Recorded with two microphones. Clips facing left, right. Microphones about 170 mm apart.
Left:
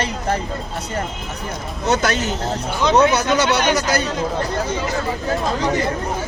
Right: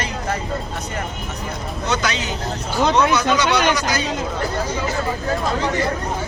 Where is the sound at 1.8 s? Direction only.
50° left (ahead or behind).